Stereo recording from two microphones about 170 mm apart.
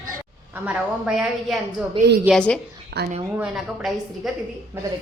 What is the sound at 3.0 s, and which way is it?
Speech, 75° right (ahead or behind).